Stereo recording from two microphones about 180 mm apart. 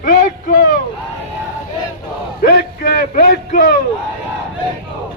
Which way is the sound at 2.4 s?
60° left (ahead or behind).